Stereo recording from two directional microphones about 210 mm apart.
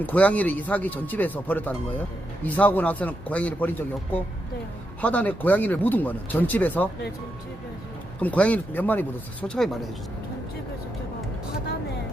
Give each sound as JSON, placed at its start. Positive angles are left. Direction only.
{"t": 0.0, "sound": "speech", "side_deg": 5}
{"t": 8.2, "sound": "speech", "side_deg": 5}